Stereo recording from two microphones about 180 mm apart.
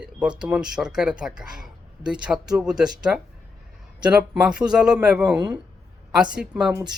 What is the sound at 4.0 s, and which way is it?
Speech, 5° right (ahead or behind).